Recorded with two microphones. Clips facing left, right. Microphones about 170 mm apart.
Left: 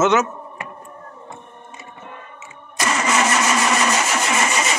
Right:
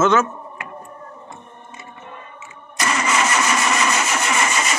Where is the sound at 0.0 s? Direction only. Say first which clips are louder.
Even; 20° left (ahead or behind).